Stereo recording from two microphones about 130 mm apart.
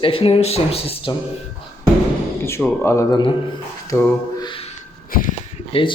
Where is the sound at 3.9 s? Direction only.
20° left (ahead or behind).